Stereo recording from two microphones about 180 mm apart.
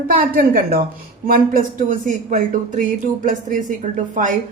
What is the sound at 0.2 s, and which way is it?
A woman's voice, 55° right (ahead or behind).